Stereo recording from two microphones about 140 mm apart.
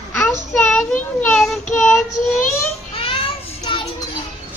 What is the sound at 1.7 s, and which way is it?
Child singing, 20° left (ahead or behind).